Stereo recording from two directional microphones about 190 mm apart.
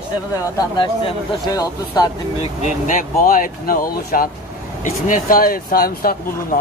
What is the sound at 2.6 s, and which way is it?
Speech, 40° left (ahead or behind).